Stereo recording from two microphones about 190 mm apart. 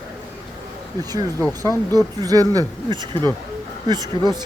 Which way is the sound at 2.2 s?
20° right (ahead or behind).